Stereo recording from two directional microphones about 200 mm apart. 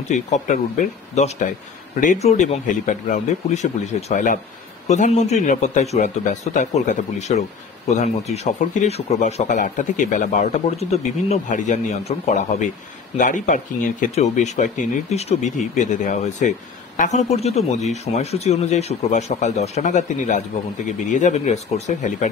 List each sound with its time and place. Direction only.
0.1 s speech: 40° left (ahead or behind)